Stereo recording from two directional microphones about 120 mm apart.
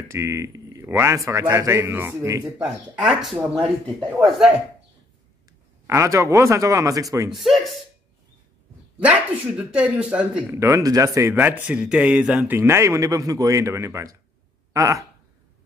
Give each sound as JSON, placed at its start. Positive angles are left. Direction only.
{"t": 0.1, "sound": "a man's voice", "side_deg": -25}
{"t": 2.6, "sound": "speech", "side_deg": -5}
{"t": 5.9, "sound": "a man's voice", "side_deg": -25}
{"t": 7.2, "sound": "speech", "side_deg": 0}
{"t": 9.0, "sound": "speech", "side_deg": -10}
{"t": 10.6, "sound": "a man's voice", "side_deg": -25}
{"t": 11.3, "sound": "speech", "side_deg": -15}
{"t": 12.5, "sound": "a man's voice", "side_deg": -20}